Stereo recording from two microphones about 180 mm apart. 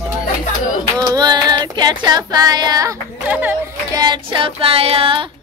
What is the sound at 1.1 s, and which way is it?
Child singing, 20° right (ahead or behind).